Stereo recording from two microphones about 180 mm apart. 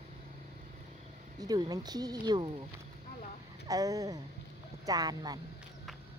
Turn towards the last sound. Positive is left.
turn(degrees=-20)  # may be behind; listen again after turning